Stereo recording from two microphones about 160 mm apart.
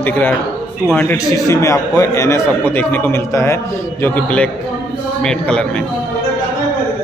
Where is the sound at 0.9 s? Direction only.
15° left (ahead or behind).